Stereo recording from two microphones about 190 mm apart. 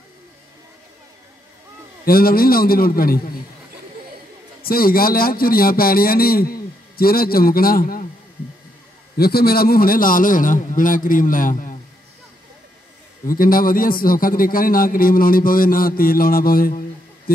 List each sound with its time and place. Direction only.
2.0 s a man's voice: 50° left (ahead or behind)
4.6 s a man's voice: 50° left (ahead or behind)
9.1 s a man's voice: 55° left (ahead or behind)
13.3 s a man's voice: 50° left (ahead or behind)